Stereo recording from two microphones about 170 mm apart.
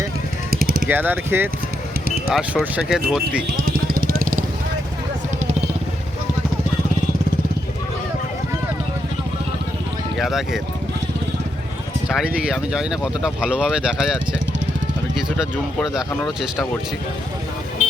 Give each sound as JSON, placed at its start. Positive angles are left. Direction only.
{"t": 0.5, "sound": "a sound", "side_deg": -60}
{"t": 0.9, "sound": "speech", "side_deg": -10}
{"t": 3.7, "sound": "vehicle", "side_deg": -60}
{"t": 10.2, "sound": "speech", "side_deg": 0}
{"t": 12.0, "sound": "speech", "side_deg": -5}